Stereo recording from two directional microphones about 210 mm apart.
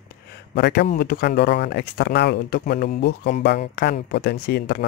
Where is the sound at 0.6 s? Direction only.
50° left (ahead or behind).